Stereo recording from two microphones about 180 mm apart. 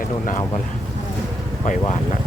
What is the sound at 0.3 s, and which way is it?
Speech, 45° left (ahead or behind).